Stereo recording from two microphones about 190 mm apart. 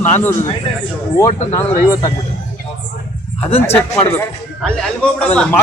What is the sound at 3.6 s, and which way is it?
A man's voice, 10° left (ahead or behind).